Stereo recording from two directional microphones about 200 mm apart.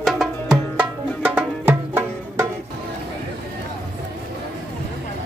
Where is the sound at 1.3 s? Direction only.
10° right (ahead or behind).